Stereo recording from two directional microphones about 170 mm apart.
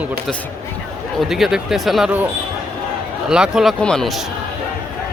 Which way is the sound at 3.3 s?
5° right (ahead or behind).